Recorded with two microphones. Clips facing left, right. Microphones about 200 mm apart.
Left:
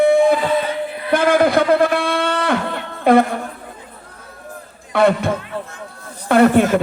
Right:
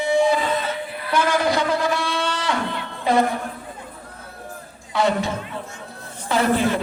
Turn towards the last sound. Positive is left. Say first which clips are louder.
# left 7 dB
turn(degrees=55)  # may be behind; listen again after turning